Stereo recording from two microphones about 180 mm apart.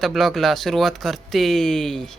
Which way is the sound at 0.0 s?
Centre (ahead or behind).